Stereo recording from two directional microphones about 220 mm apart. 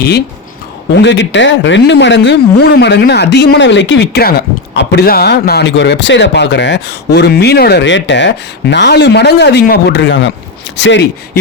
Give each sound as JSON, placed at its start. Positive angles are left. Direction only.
{"t": 0.9, "sound": "speech", "side_deg": 55}